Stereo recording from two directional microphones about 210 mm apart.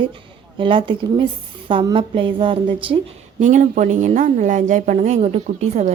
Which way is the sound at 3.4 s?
35° right (ahead or behind).